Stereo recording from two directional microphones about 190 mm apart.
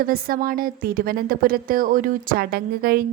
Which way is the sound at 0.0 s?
50° right (ahead or behind).